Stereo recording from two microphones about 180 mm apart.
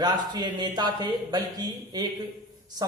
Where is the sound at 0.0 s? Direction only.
25° right (ahead or behind).